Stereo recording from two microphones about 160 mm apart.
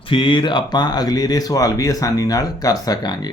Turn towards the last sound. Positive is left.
turn(degrees=25)  # may be behind; listen again after turning